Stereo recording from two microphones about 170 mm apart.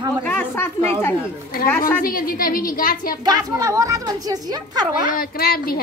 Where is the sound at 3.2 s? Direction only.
20° right (ahead or behind).